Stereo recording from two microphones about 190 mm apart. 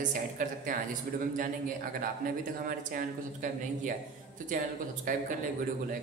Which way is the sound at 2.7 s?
45° right (ahead or behind).